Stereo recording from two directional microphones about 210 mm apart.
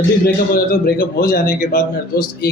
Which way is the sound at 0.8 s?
45° left (ahead or behind).